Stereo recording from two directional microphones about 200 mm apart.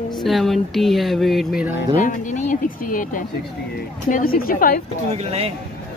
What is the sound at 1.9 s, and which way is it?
A woman's voice, 40° left (ahead or behind).